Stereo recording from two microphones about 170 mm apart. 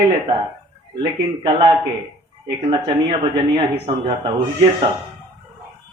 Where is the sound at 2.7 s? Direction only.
30° right (ahead or behind).